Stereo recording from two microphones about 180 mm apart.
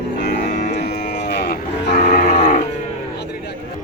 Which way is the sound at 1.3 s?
60° left (ahead or behind).